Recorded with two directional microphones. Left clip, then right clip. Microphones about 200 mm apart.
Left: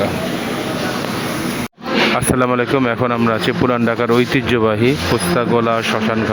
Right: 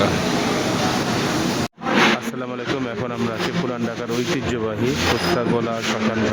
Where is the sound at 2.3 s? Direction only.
25° left (ahead or behind).